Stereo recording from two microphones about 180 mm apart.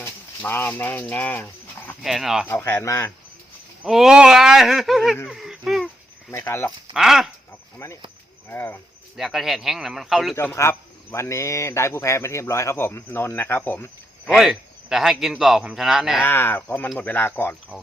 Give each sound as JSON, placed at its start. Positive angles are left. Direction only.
{"t": 0.0, "sound": "speech", "side_deg": 10}
{"t": 2.0, "sound": "speech", "side_deg": 0}
{"t": 2.5, "sound": "speech", "side_deg": 15}
{"t": 3.8, "sound": "speech", "side_deg": 0}
{"t": 5.1, "sound": "a sound", "side_deg": 0}
{"t": 6.3, "sound": "speech", "side_deg": 15}
{"t": 6.9, "sound": "speech", "side_deg": 0}
{"t": 7.8, "sound": "speech", "side_deg": 15}
{"t": 9.1, "sound": "speech", "side_deg": 0}
{"t": 10.3, "sound": "speech", "side_deg": 15}
{"t": 16.2, "sound": "speech", "side_deg": 15}